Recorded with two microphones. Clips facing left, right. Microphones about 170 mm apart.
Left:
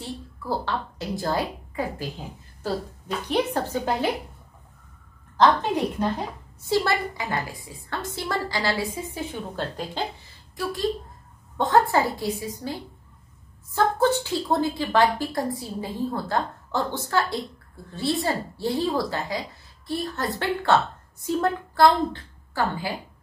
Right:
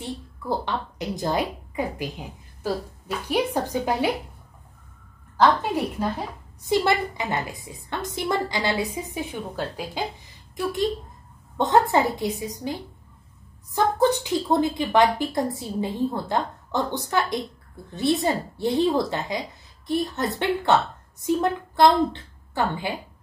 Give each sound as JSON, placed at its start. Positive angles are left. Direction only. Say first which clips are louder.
{"t": 0.0, "sound": "a woman's voice", "louder": "right 2 dB", "side_deg": -20}
{"t": 5.4, "sound": "a woman's voice", "louder": "even", "side_deg": -5}
{"t": 6.7, "sound": "a woman's voice", "louder": "right 2 dB", "side_deg": -20}